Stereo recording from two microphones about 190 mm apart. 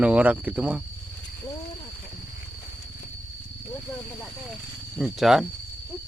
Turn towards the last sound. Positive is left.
turn(degrees=0)  # may be behind; listen again after turning